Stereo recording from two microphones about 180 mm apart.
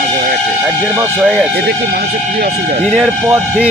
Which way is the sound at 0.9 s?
15° right (ahead or behind).